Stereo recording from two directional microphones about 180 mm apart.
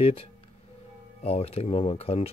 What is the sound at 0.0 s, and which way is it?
Speech, 30° left (ahead or behind).